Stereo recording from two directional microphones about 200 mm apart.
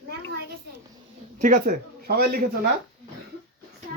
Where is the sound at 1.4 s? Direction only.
40° right (ahead or behind).